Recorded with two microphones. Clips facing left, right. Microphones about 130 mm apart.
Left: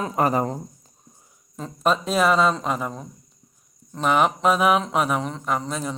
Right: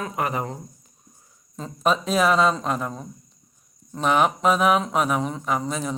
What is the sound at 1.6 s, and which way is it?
Speech, centre (ahead or behind).